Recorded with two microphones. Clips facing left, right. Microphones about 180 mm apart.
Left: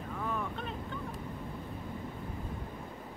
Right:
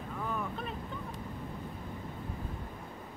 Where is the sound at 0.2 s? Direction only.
Centre (ahead or behind).